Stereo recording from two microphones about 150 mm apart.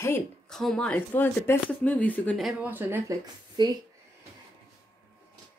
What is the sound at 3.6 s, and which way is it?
Speech, 30° right (ahead or behind).